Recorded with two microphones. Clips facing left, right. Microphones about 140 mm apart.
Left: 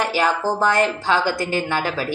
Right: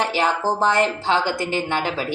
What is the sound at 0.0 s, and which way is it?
A woman's voice, 25° right (ahead or behind).